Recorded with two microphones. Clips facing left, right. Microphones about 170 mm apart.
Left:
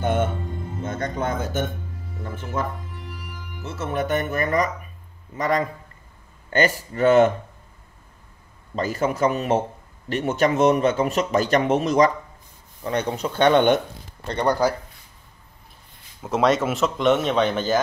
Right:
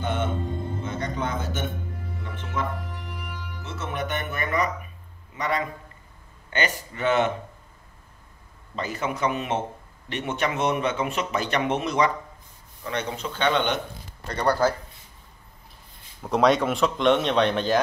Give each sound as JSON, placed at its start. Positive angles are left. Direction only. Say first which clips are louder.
{"t": 0.0, "sound": "music", "louder": "left 5 dB", "side_deg": 50}
{"t": 0.8, "sound": "speech", "louder": "left 5 dB", "side_deg": 50}
{"t": 3.6, "sound": "speech", "louder": "left 5 dB", "side_deg": 45}
{"t": 8.7, "sound": "speech", "louder": "left 6 dB", "side_deg": 40}
{"t": 14.2, "sound": "speech", "louder": "left 2 dB", "side_deg": 25}
{"t": 16.2, "sound": "speech", "louder": "even", "side_deg": 0}